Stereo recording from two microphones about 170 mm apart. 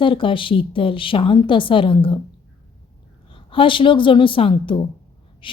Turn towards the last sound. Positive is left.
turn(degrees=30)  # may be behind; listen again after turning